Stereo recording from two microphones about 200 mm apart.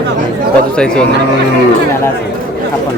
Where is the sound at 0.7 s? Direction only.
5° left (ahead or behind).